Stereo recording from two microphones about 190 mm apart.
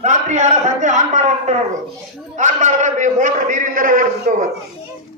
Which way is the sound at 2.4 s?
40° right (ahead or behind).